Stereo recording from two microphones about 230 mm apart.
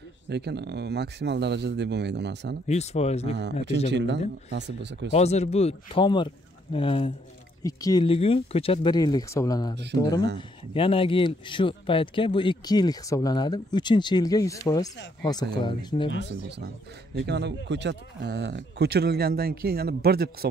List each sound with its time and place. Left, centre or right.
0.3 s speech: right
2.7 s speech: left
3.3 s speech: right
5.1 s speech: left
16.1 s speech: left
17.1 s speech: right